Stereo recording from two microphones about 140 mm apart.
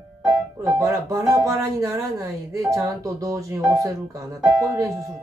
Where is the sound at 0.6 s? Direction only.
25° right (ahead or behind).